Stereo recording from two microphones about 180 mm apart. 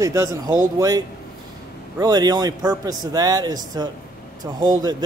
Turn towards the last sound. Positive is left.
turn(degrees=-20)  # may be behind; listen again after turning